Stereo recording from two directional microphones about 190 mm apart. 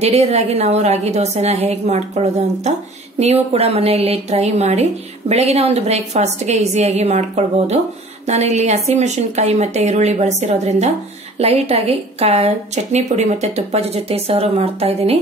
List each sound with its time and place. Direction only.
0.0 s a woman's voice: 35° right (ahead or behind)